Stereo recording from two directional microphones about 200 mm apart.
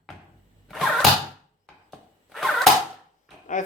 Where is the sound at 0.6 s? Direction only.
Centre (ahead or behind).